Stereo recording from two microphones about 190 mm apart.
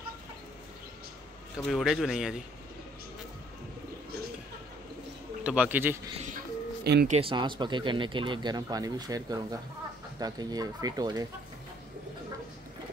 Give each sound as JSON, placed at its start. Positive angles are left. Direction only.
{"t": 1.6, "sound": "speech", "side_deg": 0}
{"t": 5.4, "sound": "speech", "side_deg": -5}
{"t": 6.3, "sound": "a sound", "side_deg": -60}
{"t": 7.1, "sound": "speech", "side_deg": -30}